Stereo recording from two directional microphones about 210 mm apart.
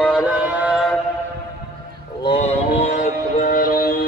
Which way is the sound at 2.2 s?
30° left (ahead or behind).